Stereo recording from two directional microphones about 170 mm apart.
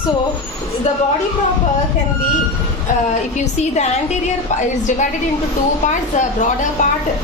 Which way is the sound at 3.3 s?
40° left (ahead or behind).